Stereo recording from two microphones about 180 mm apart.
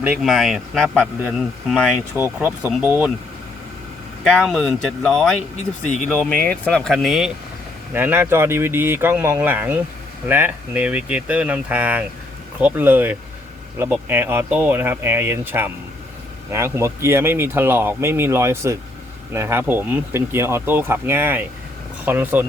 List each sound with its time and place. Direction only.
0.0 s speech: 5° right (ahead or behind)
2.1 s speech: 10° right (ahead or behind)
4.2 s speech: centre (ahead or behind)
5.8 s speech: 40° left (ahead or behind)
6.1 s speech: 5° left (ahead or behind); by 22.4 s 10° right (ahead or behind)